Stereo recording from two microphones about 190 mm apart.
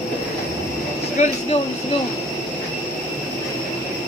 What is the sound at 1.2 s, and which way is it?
Speech, 40° left (ahead or behind).